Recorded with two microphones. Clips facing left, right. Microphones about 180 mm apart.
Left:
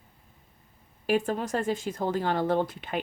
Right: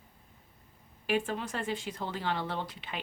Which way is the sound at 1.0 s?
40° left (ahead or behind).